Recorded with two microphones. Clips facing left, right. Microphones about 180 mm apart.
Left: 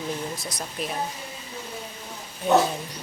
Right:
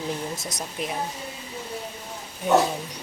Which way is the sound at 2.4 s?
10° right (ahead or behind).